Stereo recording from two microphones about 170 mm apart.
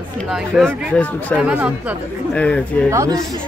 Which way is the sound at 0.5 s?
Centre (ahead or behind).